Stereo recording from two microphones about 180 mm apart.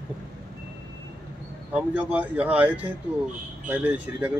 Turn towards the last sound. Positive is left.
turn(degrees=-10)  # may be behind; listen again after turning